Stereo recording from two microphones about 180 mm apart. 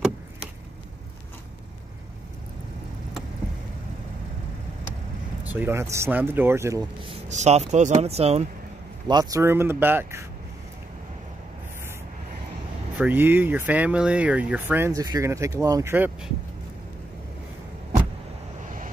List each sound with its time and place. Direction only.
5.4 s speech: 10° right (ahead or behind)
7.1 s speech: 35° right (ahead or behind)
9.0 s speech: 20° right (ahead or behind)
12.9 s speech: 10° right (ahead or behind)